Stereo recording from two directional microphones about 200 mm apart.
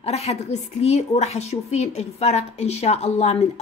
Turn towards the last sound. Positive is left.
turn(degrees=35)  # may be behind; listen again after turning